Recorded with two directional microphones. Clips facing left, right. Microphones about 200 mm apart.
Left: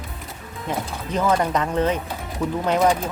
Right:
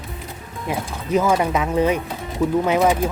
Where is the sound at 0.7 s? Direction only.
10° right (ahead or behind).